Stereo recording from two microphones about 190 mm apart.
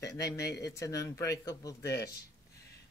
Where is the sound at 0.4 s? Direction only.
60° left (ahead or behind).